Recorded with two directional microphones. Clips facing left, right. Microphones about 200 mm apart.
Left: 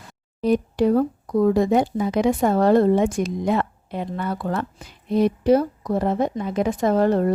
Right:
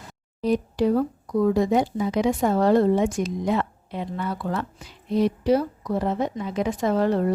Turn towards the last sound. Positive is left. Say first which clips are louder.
# left 3 dB
turn(degrees=45)  # may be behind; listen again after turning